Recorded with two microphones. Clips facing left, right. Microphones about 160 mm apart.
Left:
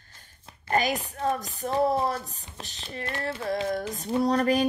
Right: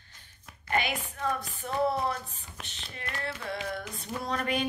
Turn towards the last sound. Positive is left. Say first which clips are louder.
# left 8 dB
turn(degrees=35)  # may be behind; listen again after turning